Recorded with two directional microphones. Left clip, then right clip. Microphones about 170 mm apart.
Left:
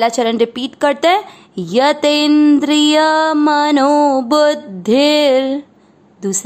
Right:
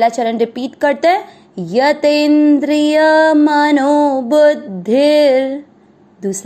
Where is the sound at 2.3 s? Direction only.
30° left (ahead or behind).